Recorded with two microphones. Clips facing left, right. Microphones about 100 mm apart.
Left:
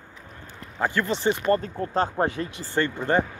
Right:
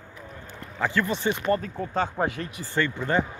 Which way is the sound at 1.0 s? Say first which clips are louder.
Left 2 dB; 20° left (ahead or behind).